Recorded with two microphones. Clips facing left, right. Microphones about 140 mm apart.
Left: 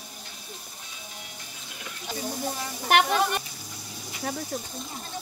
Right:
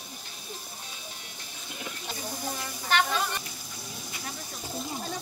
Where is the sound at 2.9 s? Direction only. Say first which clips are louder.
Left 5 dB; 60° left (ahead or behind).